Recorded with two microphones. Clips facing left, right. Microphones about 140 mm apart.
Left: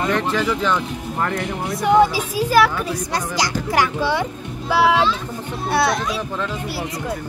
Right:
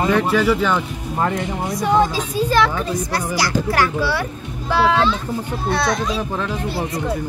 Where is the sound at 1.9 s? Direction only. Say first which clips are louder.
Left 3 dB; 10° left (ahead or behind).